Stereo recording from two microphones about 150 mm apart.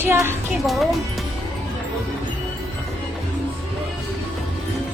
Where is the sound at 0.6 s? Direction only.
Centre (ahead or behind).